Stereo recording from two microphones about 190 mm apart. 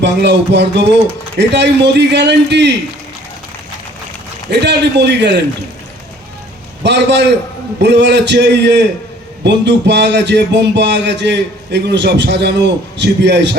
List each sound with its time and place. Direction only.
0.0 s a man's voice: 65° right (ahead or behind)
4.4 s a man's voice: 60° right (ahead or behind)
6.8 s a man's voice: 65° right (ahead or behind)